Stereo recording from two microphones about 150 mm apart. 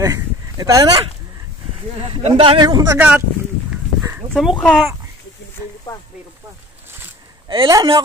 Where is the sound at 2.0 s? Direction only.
40° right (ahead or behind).